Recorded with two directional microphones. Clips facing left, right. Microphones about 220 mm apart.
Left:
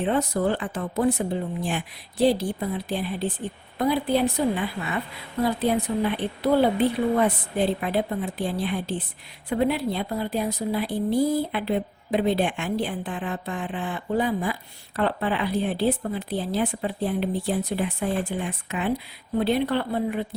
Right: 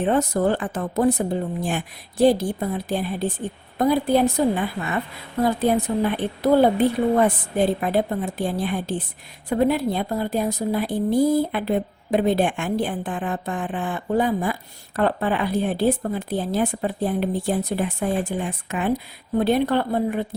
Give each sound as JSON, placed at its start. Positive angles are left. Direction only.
{"t": 0.0, "sound": "a woman's voice", "side_deg": -45}